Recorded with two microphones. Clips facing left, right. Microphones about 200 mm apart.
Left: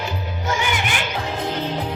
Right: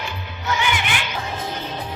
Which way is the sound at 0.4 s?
45° left (ahead or behind).